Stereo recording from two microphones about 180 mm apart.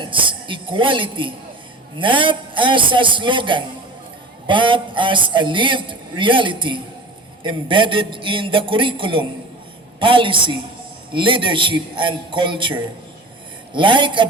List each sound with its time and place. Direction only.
0.0 s a man's voice: 30° right (ahead or behind)